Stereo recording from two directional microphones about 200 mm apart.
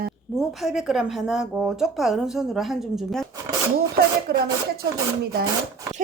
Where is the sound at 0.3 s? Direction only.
Centre (ahead or behind).